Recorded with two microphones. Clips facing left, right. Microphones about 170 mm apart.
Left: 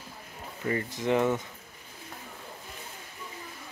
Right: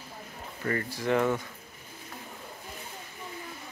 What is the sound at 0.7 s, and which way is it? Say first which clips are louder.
Speech: left 1 dB; 20° left (ahead or behind).